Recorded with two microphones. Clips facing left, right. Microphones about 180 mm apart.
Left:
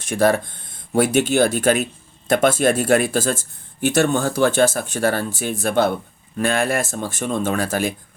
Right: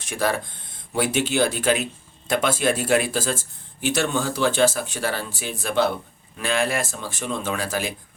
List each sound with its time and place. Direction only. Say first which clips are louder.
0.0 s speech: left 7 dB; 45° left (ahead or behind)